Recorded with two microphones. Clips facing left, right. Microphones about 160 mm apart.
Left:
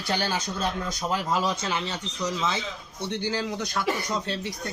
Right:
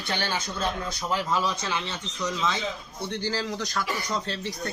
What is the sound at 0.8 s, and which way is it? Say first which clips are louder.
Speech: left 1 dB; 45° left (ahead or behind).